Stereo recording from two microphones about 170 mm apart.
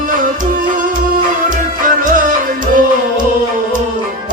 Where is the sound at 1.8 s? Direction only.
50° right (ahead or behind).